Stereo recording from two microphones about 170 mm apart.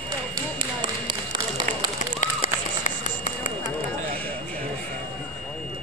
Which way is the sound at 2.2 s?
50° left (ahead or behind).